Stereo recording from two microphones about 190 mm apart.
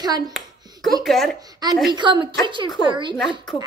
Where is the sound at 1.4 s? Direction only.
20° right (ahead or behind).